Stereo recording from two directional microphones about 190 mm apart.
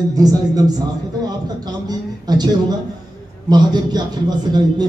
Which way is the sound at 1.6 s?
20° right (ahead or behind).